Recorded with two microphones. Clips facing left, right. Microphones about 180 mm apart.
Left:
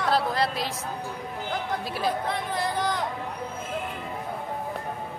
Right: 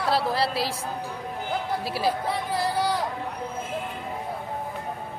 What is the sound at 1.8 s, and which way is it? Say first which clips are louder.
Speech: right 2 dB; 5° right (ahead or behind).